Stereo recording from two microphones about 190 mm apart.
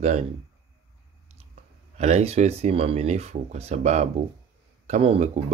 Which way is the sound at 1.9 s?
35° right (ahead or behind).